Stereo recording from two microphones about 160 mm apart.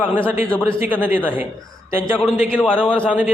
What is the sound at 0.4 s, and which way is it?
Speech, 10° left (ahead or behind).